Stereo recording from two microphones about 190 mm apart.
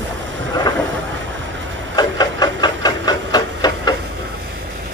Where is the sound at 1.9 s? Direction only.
20° left (ahead or behind).